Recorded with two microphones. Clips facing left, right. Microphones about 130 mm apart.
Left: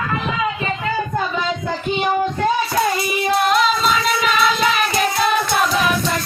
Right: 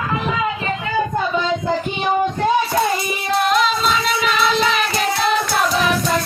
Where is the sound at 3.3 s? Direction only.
Centre (ahead or behind).